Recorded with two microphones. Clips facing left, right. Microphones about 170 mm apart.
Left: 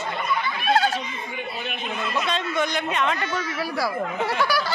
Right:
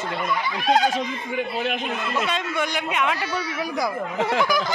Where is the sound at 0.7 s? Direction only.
15° right (ahead or behind).